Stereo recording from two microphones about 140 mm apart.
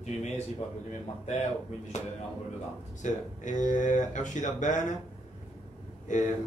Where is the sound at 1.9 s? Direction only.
60° left (ahead or behind).